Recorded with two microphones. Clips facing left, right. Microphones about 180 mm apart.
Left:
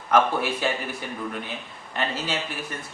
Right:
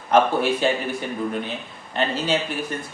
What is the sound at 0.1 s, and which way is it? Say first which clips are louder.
Speech: right 3 dB; 25° right (ahead or behind).